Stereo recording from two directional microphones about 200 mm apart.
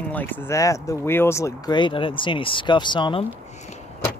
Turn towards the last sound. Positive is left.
turn(degrees=35)  # may be behind; listen again after turning